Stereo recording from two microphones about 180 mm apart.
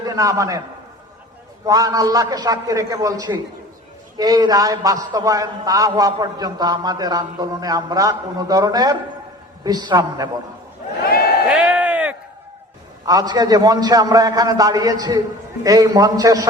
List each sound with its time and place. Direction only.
0.0 s a man's voice: 20° right (ahead or behind)
1.6 s a man's voice: 20° right (ahead or behind)
11.4 s a sound: 5° right (ahead or behind)
13.1 s a man's voice: 20° right (ahead or behind)